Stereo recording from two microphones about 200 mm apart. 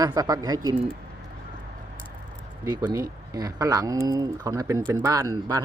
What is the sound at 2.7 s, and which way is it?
Speech, 20° right (ahead or behind).